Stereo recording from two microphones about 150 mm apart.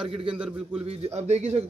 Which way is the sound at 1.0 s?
45° right (ahead or behind).